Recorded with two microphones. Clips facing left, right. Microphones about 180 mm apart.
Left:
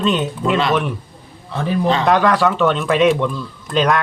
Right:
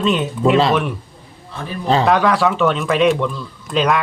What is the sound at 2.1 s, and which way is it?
Speech, centre (ahead or behind).